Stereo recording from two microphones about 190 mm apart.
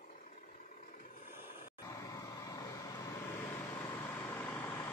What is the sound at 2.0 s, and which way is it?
Vehicle, 20° left (ahead or behind).